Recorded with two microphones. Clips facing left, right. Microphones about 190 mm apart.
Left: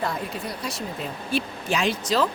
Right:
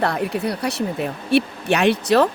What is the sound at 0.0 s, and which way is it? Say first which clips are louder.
Speech: right 8 dB; 70° right (ahead or behind).